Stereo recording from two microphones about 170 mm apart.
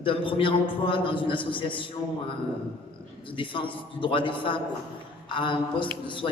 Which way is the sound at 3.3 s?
30° left (ahead or behind).